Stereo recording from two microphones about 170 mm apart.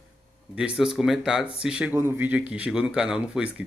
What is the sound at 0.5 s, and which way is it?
Speech, 5° right (ahead or behind).